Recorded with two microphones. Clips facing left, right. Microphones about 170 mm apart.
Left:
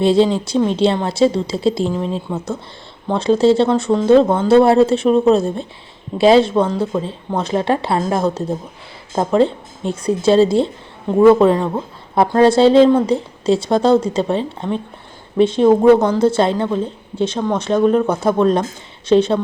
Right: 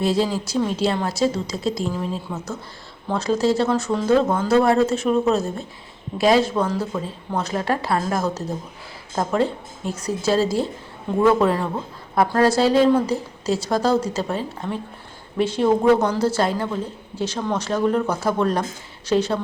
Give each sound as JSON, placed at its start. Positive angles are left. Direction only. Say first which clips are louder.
{"t": 0.0, "sound": "speech", "louder": "left 7 dB", "side_deg": 25}